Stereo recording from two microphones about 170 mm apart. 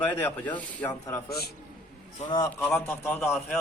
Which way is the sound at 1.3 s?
65° left (ahead or behind).